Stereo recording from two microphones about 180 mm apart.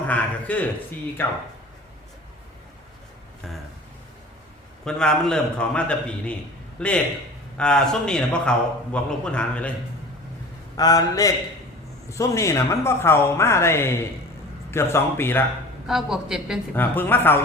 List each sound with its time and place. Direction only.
0.1 s speech: 10° left (ahead or behind)
4.9 s a man's voice: 5° left (ahead or behind)
10.8 s a man's voice: 20° left (ahead or behind)
15.9 s a man's voice: centre (ahead or behind)
16.7 s speech: 10° left (ahead or behind)